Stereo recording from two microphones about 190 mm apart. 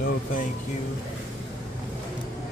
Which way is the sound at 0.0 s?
45° left (ahead or behind).